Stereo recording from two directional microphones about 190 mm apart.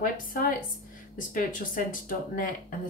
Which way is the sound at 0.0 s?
45° left (ahead or behind).